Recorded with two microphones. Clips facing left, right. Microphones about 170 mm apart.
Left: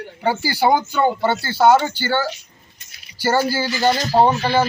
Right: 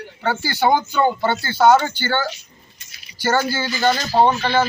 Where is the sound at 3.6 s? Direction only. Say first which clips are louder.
Left 1 dB; 10° left (ahead or behind).